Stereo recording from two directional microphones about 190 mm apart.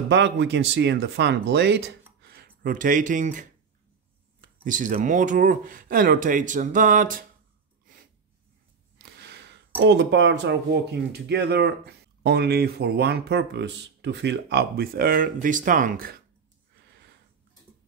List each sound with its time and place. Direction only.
0.1 s speech: 65° right (ahead or behind)
2.2 s speech: 55° right (ahead or behind)
4.6 s speech: 45° right (ahead or behind)
9.0 s a sound: 60° right (ahead or behind)
9.8 s speech: 65° right (ahead or behind); by 16.2 s 45° right (ahead or behind)